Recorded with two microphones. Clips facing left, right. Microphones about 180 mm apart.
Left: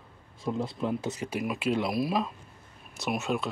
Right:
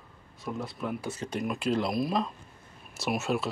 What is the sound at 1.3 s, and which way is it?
Speech, 5° left (ahead or behind).